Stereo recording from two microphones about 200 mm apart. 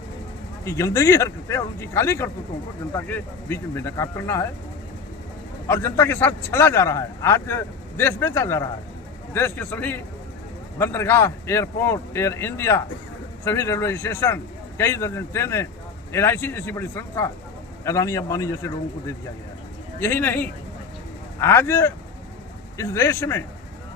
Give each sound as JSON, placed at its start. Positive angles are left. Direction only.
{"t": 0.6, "sound": "a man's voice", "side_deg": 15}
{"t": 5.6, "sound": "a man's voice", "side_deg": 10}